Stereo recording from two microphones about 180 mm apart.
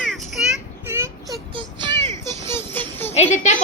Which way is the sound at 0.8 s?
15° right (ahead or behind).